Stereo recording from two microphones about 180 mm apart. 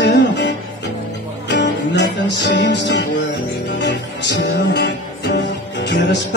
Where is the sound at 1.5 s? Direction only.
80° left.